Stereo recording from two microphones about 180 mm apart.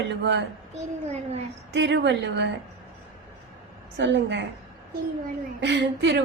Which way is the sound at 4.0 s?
80° right.